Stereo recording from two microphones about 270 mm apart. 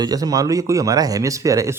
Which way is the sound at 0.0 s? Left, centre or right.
Centre.